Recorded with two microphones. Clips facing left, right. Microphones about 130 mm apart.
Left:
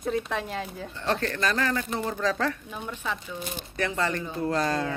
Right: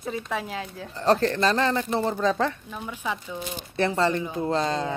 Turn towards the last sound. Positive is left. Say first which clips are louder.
# right 1 dB
turn(degrees=-25)  # may be behind; listen again after turning